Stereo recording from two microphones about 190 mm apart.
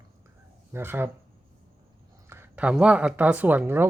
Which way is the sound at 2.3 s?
10° right (ahead or behind).